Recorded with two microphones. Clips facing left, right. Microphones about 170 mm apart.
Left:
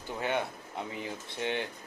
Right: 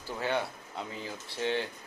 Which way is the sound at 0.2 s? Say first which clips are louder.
Even; 20° left (ahead or behind).